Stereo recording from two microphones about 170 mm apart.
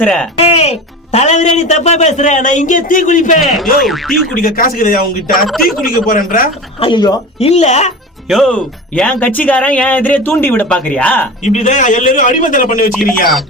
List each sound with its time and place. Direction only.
0.0 s speech: 5° left (ahead or behind)
0.3 s a woman's voice: 35° left (ahead or behind)
3.4 s speech: centre (ahead or behind)
4.4 s a man's voice: 60° left (ahead or behind)
5.5 s speech: centre (ahead or behind)
5.9 s a man's voice: 55° left (ahead or behind)
6.7 s speech: 30° left (ahead or behind)
7.3 s speech: 40° left (ahead or behind)
8.3 s speech: 5° left (ahead or behind)
11.4 s a woman's voice: 45° left (ahead or behind)